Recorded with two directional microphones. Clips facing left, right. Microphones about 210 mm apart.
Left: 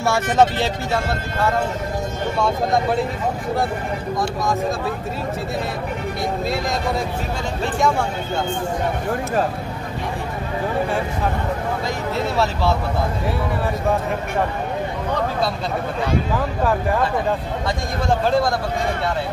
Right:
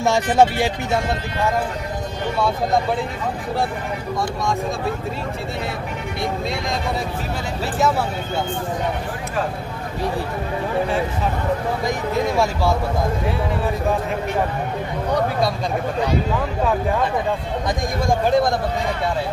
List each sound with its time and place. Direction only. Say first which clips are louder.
0.0 s speech: right 1 dB; 15° right (ahead or behind)
18.0 s speech: right 1 dB; 15° right (ahead or behind)